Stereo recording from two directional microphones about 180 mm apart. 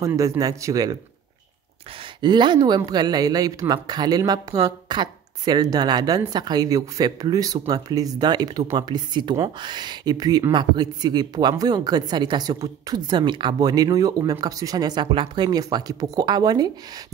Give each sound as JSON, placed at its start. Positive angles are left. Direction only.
{"t": 0.0, "sound": "speech", "side_deg": -20}
{"t": 2.2, "sound": "speech", "side_deg": -25}